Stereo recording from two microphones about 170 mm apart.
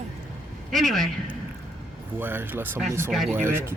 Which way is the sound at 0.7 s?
Centre (ahead or behind).